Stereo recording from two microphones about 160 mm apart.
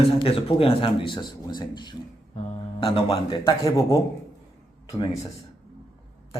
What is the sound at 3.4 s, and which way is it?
Speech, 20° left (ahead or behind).